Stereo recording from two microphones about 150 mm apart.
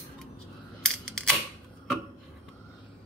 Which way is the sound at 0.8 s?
5° left (ahead or behind).